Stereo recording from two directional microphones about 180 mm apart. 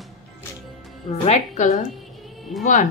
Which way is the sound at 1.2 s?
40° left (ahead or behind).